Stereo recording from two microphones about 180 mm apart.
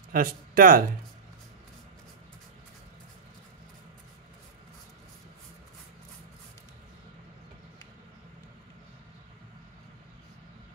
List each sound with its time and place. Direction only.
0.1 s speech: 50° right (ahead or behind)